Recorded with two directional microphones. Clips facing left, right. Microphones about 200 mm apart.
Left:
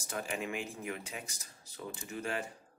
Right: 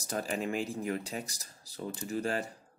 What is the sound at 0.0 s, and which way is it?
Speech, 40° right (ahead or behind).